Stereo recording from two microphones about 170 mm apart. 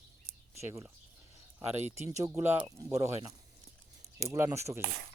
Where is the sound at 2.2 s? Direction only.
15° right (ahead or behind).